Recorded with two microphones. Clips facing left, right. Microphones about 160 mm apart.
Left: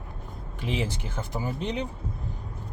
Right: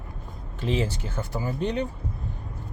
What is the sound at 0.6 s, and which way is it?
Speech, 15° left (ahead or behind).